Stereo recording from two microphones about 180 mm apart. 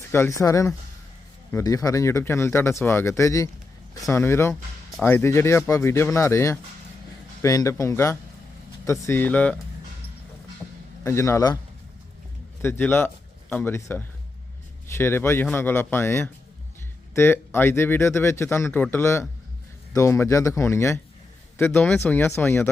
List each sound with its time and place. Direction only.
0.1 s speech: 15° left (ahead or behind)
11.0 s speech: 15° left (ahead or behind)
12.6 s speech: 10° left (ahead or behind)